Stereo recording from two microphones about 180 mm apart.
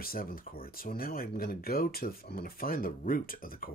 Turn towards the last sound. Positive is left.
turn(degrees=50)  # may be behind; listen again after turning